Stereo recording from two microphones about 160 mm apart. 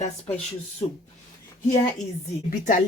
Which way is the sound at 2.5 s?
55° left (ahead or behind).